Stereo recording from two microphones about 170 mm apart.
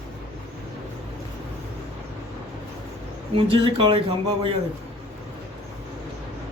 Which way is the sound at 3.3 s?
30° right (ahead or behind).